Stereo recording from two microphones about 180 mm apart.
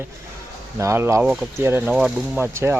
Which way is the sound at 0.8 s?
15° right (ahead or behind).